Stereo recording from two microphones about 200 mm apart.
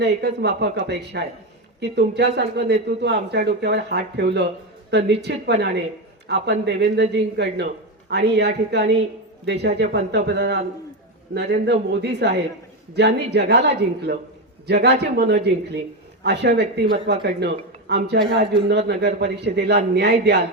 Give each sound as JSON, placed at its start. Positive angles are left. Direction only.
{"t": 0.0, "sound": "a man's voice", "side_deg": -55}